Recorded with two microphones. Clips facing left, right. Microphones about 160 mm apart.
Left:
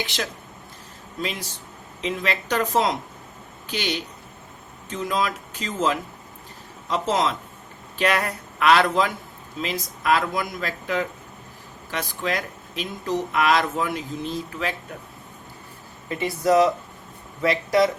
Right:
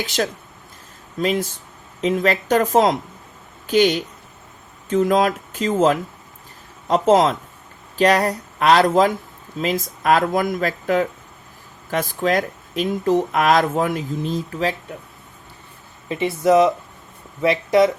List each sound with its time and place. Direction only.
0.0 s speech: 45° right (ahead or behind)
3.7 s speech: 50° right (ahead or behind)
16.0 s speech: 25° right (ahead or behind)